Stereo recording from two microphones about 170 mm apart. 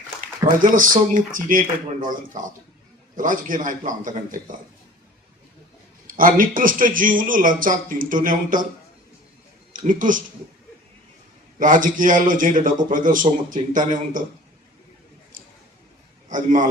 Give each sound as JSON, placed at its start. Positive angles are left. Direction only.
{"t": 0.2, "sound": "a man's voice", "side_deg": -50}
{"t": 6.1, "sound": "a man's voice", "side_deg": -55}
{"t": 9.7, "sound": "a man's voice", "side_deg": -50}
{"t": 11.6, "sound": "a man's voice", "side_deg": -50}
{"t": 16.3, "sound": "a man's voice", "side_deg": -50}